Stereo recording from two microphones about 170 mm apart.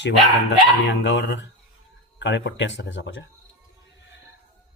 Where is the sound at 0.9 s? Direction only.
90° left.